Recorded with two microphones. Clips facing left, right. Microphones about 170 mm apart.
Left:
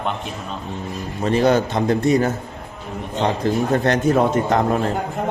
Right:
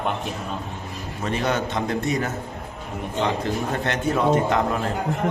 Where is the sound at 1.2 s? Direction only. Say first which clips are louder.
Left 8 dB; 35° left (ahead or behind).